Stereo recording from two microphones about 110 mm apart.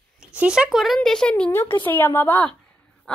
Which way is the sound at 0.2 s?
10° right (ahead or behind).